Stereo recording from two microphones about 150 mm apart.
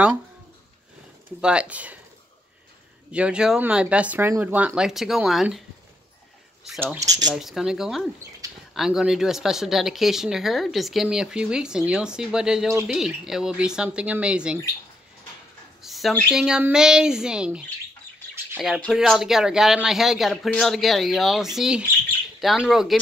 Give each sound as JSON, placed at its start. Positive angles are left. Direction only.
{"t": 1.4, "sound": "speech", "side_deg": -5}
{"t": 3.1, "sound": "speech", "side_deg": -5}
{"t": 6.8, "sound": "speech", "side_deg": -15}
{"t": 7.3, "sound": "speech", "side_deg": 0}
{"t": 8.4, "sound": "a sound", "side_deg": -25}
{"t": 8.7, "sound": "speech", "side_deg": -5}
{"t": 15.8, "sound": "a sound", "side_deg": 0}
{"t": 16.3, "sound": "speech", "side_deg": -5}
{"t": 18.9, "sound": "speech", "side_deg": -5}